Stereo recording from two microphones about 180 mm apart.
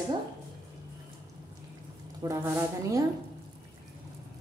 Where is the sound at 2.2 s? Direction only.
15° right (ahead or behind).